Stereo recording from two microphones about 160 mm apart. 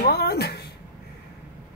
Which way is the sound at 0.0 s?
85° left.